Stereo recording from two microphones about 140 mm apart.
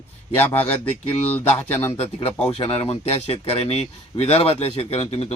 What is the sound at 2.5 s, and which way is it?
Speech, 40° left (ahead or behind).